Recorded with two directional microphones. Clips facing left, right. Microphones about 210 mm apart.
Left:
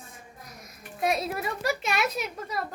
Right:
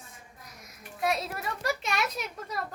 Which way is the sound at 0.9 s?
15° left (ahead or behind).